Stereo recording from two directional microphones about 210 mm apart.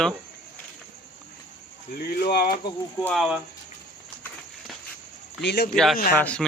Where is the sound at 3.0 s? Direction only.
5° left (ahead or behind).